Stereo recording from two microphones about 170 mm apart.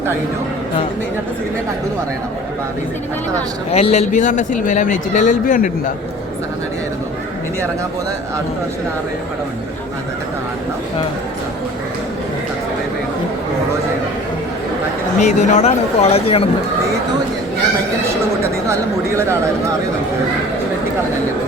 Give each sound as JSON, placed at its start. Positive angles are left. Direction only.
{"t": 3.7, "sound": "speech", "side_deg": 35}
{"t": 15.2, "sound": "speech", "side_deg": 45}
{"t": 18.7, "sound": "speech", "side_deg": -15}